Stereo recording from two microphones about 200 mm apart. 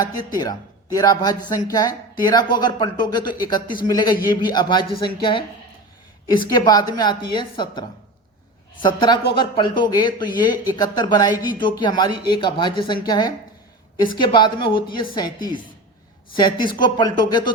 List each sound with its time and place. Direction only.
0.0 s a woman's voice: 20° left (ahead or behind)
6.5 s a woman's voice: 20° left (ahead or behind)
9.0 s a woman's voice: 25° left (ahead or behind)
16.6 s a woman's voice: 20° left (ahead or behind)